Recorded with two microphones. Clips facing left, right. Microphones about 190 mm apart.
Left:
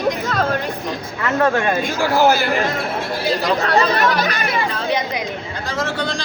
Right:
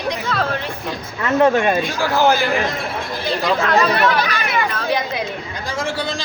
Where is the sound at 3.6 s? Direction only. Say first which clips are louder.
Even; 35° left (ahead or behind).